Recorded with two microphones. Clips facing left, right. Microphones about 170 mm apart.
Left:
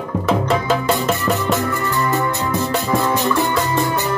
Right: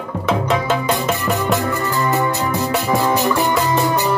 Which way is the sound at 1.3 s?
15° right (ahead or behind).